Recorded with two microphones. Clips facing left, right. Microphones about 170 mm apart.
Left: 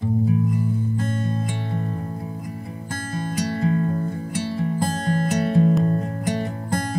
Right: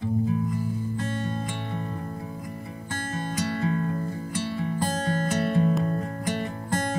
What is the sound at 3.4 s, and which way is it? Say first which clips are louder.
Music: left 5 dB; 35° left (ahead or behind).